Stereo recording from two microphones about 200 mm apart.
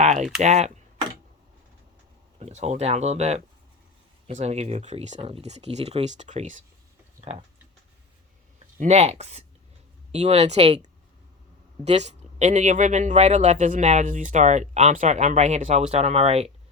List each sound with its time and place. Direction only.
0.0 s typing: 35° right (ahead or behind)
0.4 s speech: 35° right (ahead or behind)
2.4 s speech: 35° right (ahead or behind)
8.5 s speech: 30° right (ahead or behind)
11.9 s speech: 35° right (ahead or behind)